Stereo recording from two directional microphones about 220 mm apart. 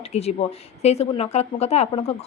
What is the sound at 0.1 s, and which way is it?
Speech, 30° left (ahead or behind).